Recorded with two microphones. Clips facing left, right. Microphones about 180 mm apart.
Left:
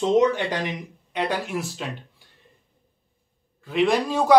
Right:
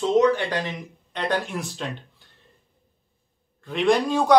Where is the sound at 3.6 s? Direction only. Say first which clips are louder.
Even; 5° left (ahead or behind).